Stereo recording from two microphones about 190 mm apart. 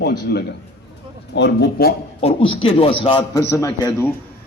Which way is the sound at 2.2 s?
30° left (ahead or behind).